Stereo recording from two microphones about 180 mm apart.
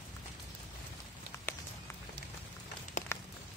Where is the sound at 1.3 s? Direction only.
15° left (ahead or behind).